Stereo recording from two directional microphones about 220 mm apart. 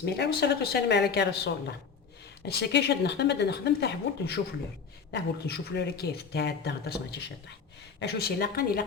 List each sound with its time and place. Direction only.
0.0 s speech: 50° left (ahead or behind)